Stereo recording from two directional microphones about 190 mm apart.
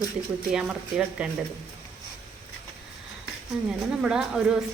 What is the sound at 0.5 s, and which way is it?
Speech, 5° right (ahead or behind).